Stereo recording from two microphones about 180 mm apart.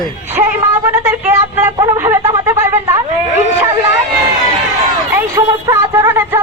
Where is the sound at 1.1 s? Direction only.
10° right (ahead or behind).